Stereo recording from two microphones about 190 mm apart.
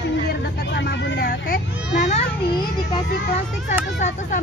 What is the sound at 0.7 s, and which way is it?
Vehicle, 65° left (ahead or behind).